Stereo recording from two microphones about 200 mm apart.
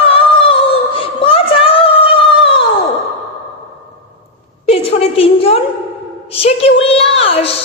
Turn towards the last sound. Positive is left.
turn(degrees=30)  # may be behind; listen again after turning